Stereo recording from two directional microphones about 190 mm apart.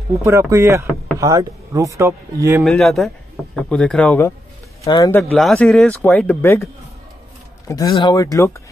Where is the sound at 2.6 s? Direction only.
Centre (ahead or behind); by 5.2 s 20° left (ahead or behind).